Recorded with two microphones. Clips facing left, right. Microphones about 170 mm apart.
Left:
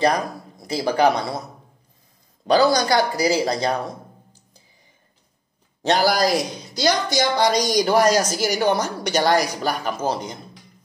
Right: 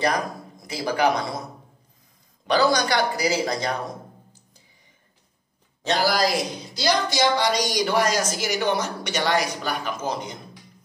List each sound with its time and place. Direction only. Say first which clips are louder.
0.0 s speech: left 4 dB; 35° left (ahead or behind)
2.4 s a woman's voice: left 3 dB; 35° left (ahead or behind)
5.9 s a woman's voice: left 3 dB; 45° left (ahead or behind)